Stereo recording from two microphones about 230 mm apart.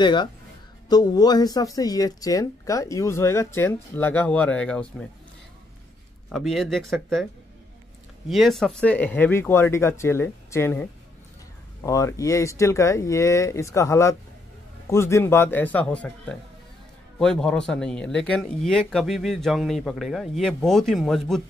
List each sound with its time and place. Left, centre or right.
0.0 s speech: centre
6.2 s speech: centre
8.3 s speech: centre